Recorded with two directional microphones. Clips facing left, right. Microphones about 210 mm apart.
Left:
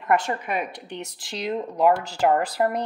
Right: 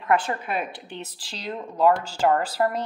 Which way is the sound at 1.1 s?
20° left (ahead or behind).